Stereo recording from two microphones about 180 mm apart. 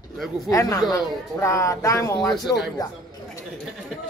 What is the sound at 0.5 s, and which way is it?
Speech, 20° left (ahead or behind).